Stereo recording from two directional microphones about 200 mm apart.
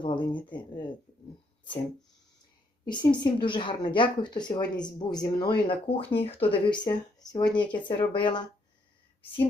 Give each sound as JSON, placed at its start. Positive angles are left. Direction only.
{"t": 0.0, "sound": "a woman's voice", "side_deg": 25}
{"t": 2.8, "sound": "a woman's voice", "side_deg": 20}